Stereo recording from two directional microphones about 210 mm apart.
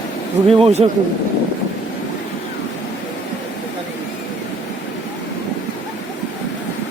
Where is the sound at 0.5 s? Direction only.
30° right (ahead or behind).